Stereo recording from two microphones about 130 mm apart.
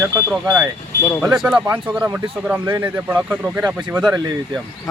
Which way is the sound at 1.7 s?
20° right (ahead or behind).